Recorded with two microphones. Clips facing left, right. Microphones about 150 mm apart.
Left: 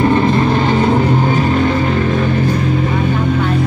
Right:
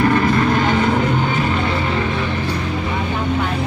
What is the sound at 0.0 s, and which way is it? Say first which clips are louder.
Music: left 3 dB; 25° left (ahead or behind).